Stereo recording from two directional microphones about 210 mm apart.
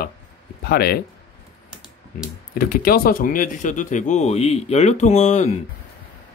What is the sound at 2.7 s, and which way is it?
Speech, 45° left (ahead or behind).